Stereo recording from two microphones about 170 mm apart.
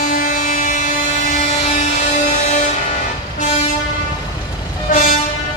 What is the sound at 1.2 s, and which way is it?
Train, 45° left (ahead or behind).